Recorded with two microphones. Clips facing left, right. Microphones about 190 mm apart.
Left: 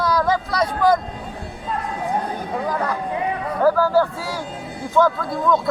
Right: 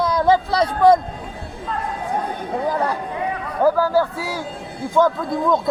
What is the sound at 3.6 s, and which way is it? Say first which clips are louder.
A man's voice: even; 15° right (ahead or behind).